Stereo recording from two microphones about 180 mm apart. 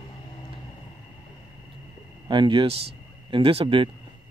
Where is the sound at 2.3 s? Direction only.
25° right (ahead or behind).